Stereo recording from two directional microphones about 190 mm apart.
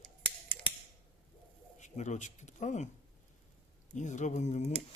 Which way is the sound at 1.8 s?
40° left (ahead or behind).